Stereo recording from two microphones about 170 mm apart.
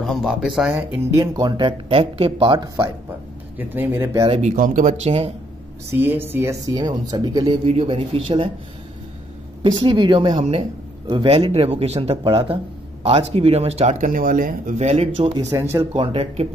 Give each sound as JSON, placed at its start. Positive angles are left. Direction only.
{"t": 0.0, "sound": "speech", "side_deg": 0}
{"t": 0.9, "sound": "speech", "side_deg": -20}
{"t": 3.5, "sound": "speech", "side_deg": -10}
{"t": 4.3, "sound": "speech", "side_deg": -45}
{"t": 5.9, "sound": "speech", "side_deg": -15}
{"t": 7.6, "sound": "speech", "side_deg": -35}
{"t": 9.6, "sound": "speech", "side_deg": -30}
{"t": 15.5, "sound": "speech", "side_deg": -15}
{"t": 15.9, "sound": "speech", "side_deg": -30}